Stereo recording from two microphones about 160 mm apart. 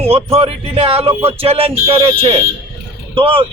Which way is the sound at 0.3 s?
40° right (ahead or behind).